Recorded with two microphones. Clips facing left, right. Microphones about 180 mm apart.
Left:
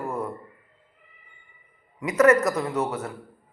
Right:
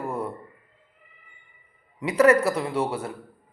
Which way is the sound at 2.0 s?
30° right (ahead or behind).